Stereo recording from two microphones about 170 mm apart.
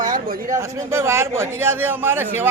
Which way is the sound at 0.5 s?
15° right (ahead or behind).